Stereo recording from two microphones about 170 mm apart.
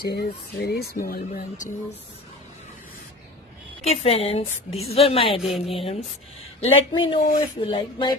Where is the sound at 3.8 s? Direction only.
35° left (ahead or behind).